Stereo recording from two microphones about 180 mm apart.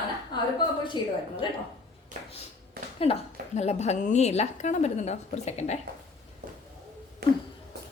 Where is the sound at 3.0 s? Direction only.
35° left (ahead or behind).